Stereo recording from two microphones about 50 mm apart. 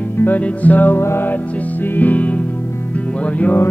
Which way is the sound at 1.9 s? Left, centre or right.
Left.